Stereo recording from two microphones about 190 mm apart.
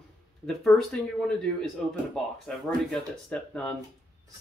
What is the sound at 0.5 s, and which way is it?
Speech, 5° left (ahead or behind).